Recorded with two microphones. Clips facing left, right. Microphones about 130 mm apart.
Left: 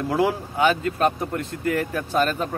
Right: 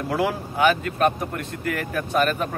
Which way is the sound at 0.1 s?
25° left (ahead or behind).